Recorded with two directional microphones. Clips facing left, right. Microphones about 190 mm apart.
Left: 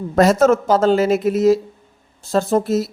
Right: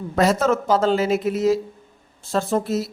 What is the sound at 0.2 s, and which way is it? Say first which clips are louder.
Speech: left 5 dB; 45° left (ahead or behind).